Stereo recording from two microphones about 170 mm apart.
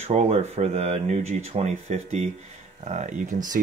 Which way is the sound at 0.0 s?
40° right (ahead or behind).